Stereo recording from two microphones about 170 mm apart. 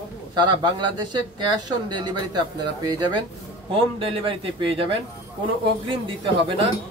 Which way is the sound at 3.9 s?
30° right (ahead or behind).